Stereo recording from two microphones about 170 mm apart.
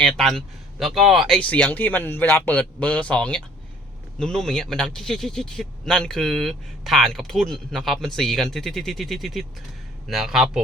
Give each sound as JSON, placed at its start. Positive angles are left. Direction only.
{"t": 0.0, "sound": "speech", "side_deg": 5}